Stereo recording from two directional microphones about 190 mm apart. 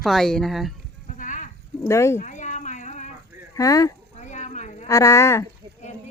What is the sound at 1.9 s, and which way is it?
Speech, 15° left (ahead or behind).